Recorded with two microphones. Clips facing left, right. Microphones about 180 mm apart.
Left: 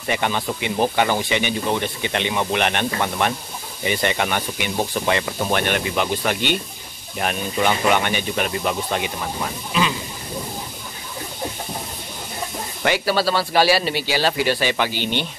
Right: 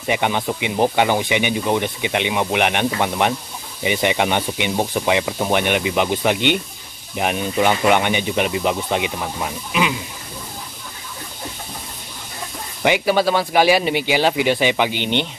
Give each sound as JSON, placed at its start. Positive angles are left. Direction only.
{"t": 0.0, "sound": "speech", "side_deg": -15}
{"t": 12.8, "sound": "speech", "side_deg": -15}